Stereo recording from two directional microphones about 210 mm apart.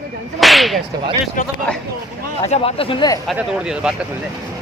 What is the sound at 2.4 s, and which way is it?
Speech, 30° left (ahead or behind).